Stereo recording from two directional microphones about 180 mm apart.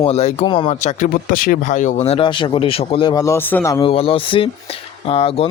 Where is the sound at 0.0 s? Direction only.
35° left (ahead or behind).